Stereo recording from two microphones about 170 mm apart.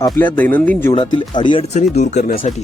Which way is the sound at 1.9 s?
45° left (ahead or behind).